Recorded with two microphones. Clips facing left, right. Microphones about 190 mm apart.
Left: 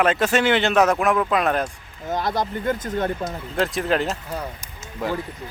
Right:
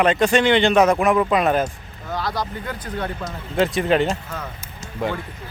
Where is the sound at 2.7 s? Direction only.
45° left (ahead or behind).